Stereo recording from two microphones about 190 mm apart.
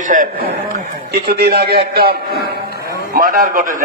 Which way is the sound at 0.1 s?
45° right (ahead or behind).